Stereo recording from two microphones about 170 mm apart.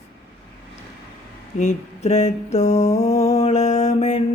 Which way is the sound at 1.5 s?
40° left (ahead or behind).